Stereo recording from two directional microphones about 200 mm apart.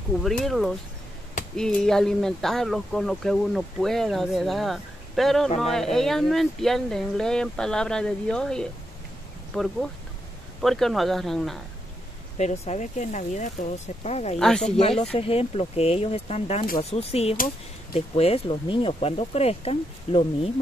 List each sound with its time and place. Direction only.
0.2 s speech: centre (ahead or behind)
12.4 s speech: 35° left (ahead or behind)
14.4 s speech: 5° left (ahead or behind)
14.8 s speech: 30° left (ahead or behind)